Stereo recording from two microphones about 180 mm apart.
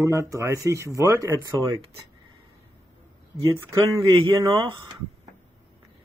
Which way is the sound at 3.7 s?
15° right (ahead or behind).